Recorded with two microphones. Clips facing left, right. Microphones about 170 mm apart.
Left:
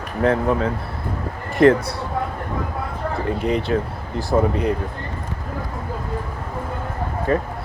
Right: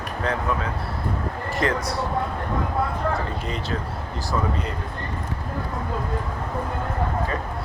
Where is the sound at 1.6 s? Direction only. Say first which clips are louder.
Left 10 dB; 55° left (ahead or behind).